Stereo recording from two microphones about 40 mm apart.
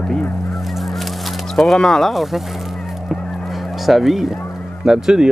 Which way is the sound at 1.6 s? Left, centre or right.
Left.